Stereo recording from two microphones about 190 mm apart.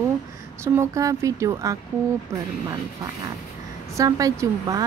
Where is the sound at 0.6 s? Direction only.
15° right (ahead or behind).